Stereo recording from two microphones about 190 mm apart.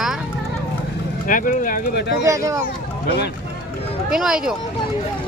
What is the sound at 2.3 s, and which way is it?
Speech, 15° right (ahead or behind).